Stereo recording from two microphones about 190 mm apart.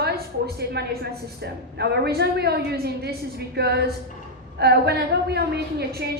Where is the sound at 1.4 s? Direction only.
60° right (ahead or behind).